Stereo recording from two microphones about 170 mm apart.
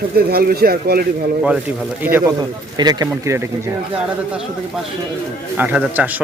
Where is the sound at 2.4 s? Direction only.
25° right (ahead or behind).